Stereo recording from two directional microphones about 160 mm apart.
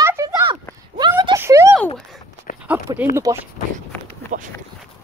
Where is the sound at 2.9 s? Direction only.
25° right (ahead or behind).